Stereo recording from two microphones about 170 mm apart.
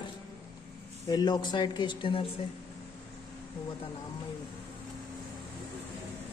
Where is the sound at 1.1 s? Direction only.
25° left (ahead or behind).